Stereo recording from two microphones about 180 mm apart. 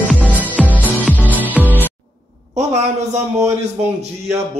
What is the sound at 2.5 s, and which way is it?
Speech, 40° right (ahead or behind).